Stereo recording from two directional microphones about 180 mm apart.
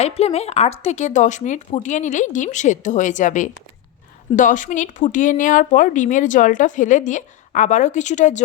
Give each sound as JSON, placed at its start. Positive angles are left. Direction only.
{"t": 0.0, "sound": "a woman's voice", "side_deg": 35}